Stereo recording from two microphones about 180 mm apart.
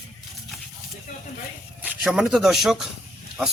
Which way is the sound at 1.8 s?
5° right (ahead or behind).